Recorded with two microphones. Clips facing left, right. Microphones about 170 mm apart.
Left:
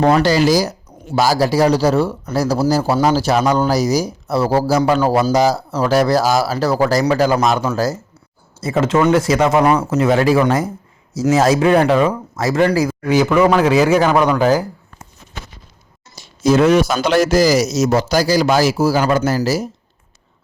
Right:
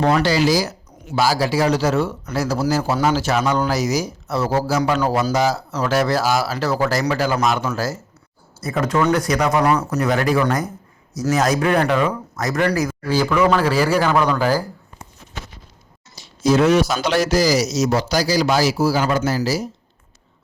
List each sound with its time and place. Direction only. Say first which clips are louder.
0.0 s speech: left 4 dB; 40° left (ahead or behind)
8.6 s speech: left 4 dB; 25° left (ahead or behind)
16.1 s a man's voice: left 3 dB; 50° left (ahead or behind)